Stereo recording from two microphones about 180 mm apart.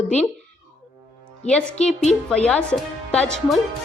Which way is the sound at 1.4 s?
35° left (ahead or behind).